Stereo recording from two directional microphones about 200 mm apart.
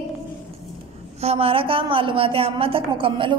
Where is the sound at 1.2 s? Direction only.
30° right (ahead or behind).